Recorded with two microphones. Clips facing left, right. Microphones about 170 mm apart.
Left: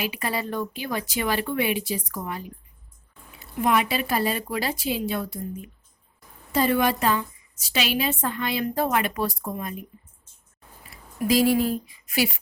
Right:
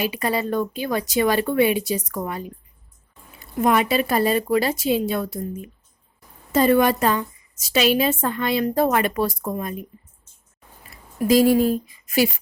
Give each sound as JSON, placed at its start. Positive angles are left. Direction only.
{"t": 0.3, "sound": "speech", "side_deg": -35}
{"t": 3.6, "sound": "a woman's voice", "side_deg": -45}
{"t": 11.3, "sound": "a woman's voice", "side_deg": -45}